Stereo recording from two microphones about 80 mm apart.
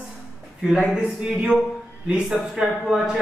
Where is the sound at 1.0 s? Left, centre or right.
Centre.